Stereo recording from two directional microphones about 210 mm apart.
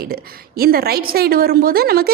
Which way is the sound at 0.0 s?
45° right (ahead or behind).